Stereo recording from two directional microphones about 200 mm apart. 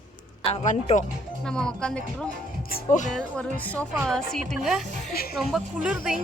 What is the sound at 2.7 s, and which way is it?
Speech, 40° left (ahead or behind).